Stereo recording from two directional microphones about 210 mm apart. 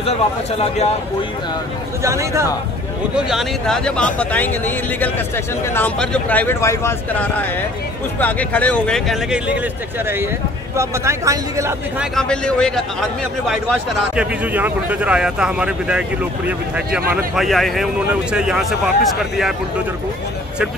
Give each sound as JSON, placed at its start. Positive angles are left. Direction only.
{"t": 0.0, "sound": "a man's voice", "side_deg": 30}
{"t": 2.0, "sound": "speech", "side_deg": -15}
{"t": 3.2, "sound": "a man's voice", "side_deg": 0}
{"t": 12.0, "sound": "speech", "side_deg": 5}